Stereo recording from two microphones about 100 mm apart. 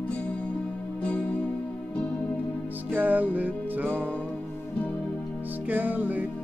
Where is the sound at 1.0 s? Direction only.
10° left (ahead or behind).